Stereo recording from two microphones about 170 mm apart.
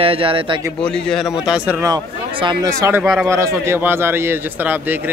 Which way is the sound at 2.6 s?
20° right (ahead or behind).